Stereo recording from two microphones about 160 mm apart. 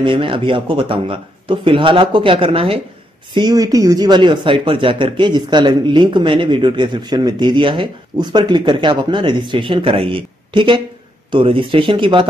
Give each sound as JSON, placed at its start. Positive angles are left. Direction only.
{"t": 0.0, "sound": "speech", "side_deg": -30}
{"t": 3.3, "sound": "speech", "side_deg": -25}